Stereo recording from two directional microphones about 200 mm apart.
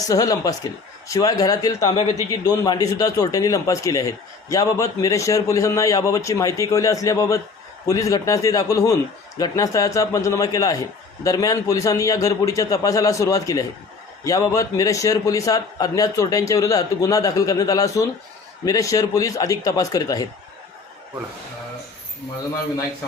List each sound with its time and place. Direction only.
0.1 s a man's voice: 20° left (ahead or behind)